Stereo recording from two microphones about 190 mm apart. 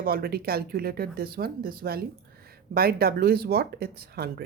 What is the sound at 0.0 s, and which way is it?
Speech, 50° right (ahead or behind).